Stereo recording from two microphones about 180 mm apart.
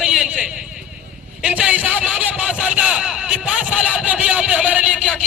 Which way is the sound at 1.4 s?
5° right (ahead or behind).